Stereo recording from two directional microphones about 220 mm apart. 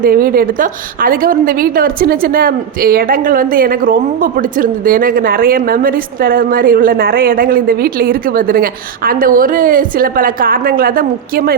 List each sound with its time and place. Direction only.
0.0 s a woman's voice: 40° right (ahead or behind)